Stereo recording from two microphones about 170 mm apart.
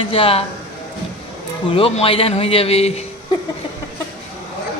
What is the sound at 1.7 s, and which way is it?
A man's voice, 35° left (ahead or behind).